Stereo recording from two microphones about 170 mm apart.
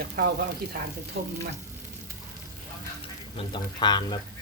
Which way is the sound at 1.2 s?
70° right (ahead or behind).